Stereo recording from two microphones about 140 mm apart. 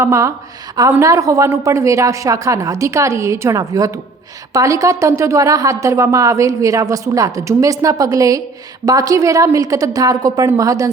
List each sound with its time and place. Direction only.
0.0 s a woman's voice: 20° right (ahead or behind)